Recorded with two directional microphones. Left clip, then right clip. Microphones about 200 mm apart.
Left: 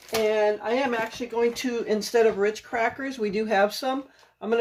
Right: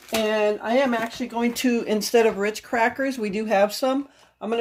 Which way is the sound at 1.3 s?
45° right (ahead or behind).